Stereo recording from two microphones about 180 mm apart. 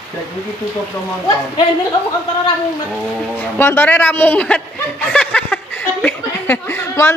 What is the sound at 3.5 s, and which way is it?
Chuckle, 10° left (ahead or behind).